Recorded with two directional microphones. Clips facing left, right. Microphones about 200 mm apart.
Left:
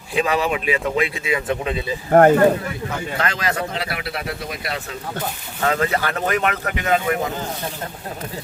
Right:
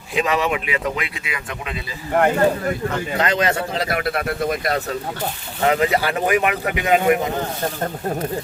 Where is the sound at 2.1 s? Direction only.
45° left (ahead or behind).